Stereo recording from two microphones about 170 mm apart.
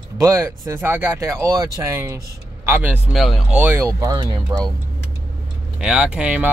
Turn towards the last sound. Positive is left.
turn(degrees=-10)  # may be behind; listen again after turning